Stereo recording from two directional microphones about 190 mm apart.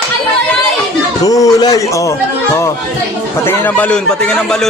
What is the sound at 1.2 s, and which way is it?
Speech, 20° left (ahead or behind).